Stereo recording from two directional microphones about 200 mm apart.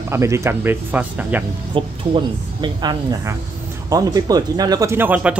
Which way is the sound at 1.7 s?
25° right (ahead or behind).